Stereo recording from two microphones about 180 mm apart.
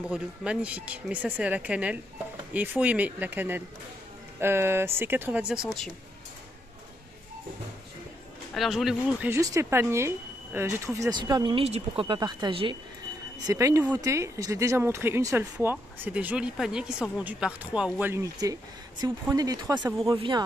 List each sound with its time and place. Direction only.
0.1 s speech: 5° right (ahead or behind)
8.5 s speech: centre (ahead or behind)
9.3 s speech: 15° right (ahead or behind)
13.5 s speech: 15° right (ahead or behind)